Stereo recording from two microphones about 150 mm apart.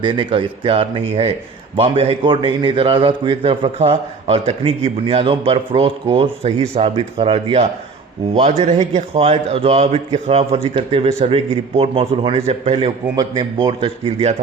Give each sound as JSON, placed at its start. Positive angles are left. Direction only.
{"t": 0.0, "sound": "a man's voice", "side_deg": -35}